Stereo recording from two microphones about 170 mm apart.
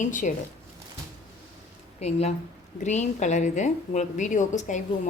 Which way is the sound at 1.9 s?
40° left (ahead or behind).